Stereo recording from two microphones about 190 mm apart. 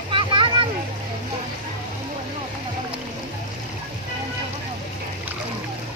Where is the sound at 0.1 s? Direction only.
25° right (ahead or behind).